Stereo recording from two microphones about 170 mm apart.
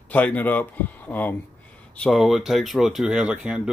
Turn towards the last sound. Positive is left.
turn(degrees=-5)  # may be behind; listen again after turning